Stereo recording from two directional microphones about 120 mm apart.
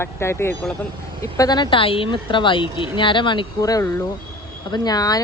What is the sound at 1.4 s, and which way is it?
Speech, 35° left (ahead or behind).